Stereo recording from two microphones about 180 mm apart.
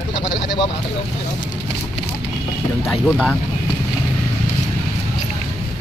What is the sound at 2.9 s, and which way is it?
Speech, 5° left (ahead or behind).